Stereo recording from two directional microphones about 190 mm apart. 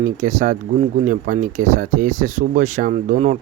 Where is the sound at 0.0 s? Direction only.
40° right (ahead or behind).